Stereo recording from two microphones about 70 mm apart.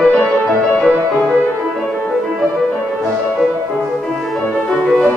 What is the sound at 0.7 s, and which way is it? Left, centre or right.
Music, centre.